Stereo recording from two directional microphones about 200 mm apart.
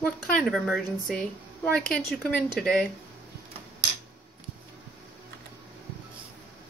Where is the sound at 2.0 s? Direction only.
50° left (ahead or behind).